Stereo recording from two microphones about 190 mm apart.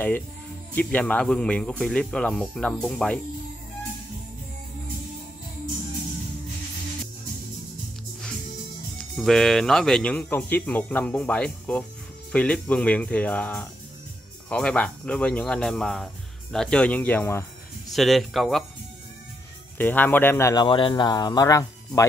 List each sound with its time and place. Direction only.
0.7 s speech: 5° left (ahead or behind)
8.9 s speech: centre (ahead or behind)
17.9 s speech: centre (ahead or behind)
19.8 s speech: 10° left (ahead or behind)
20.6 s speech: 25° left (ahead or behind)